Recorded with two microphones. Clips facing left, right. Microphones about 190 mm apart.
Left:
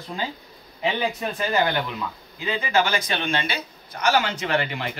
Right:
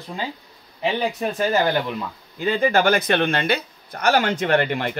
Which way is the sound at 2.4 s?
50° right (ahead or behind).